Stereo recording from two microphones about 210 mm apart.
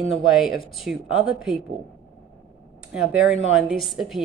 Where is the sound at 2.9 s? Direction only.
5° right (ahead or behind).